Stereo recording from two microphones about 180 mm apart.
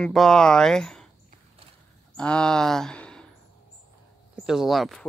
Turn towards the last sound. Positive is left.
turn(degrees=0)  # may be behind; listen again after turning